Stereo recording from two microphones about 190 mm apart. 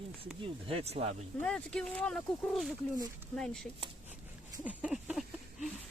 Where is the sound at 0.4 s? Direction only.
30° right (ahead or behind).